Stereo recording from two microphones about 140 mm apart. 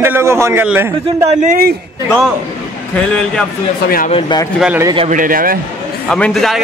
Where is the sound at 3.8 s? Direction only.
90° left.